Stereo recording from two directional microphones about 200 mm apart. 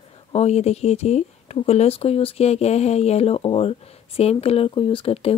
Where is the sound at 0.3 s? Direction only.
30° left (ahead or behind).